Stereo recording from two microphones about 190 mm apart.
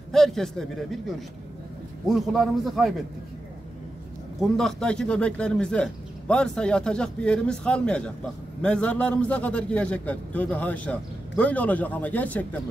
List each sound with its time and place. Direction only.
0.1 s a man's voice: centre (ahead or behind)
4.4 s speech: centre (ahead or behind)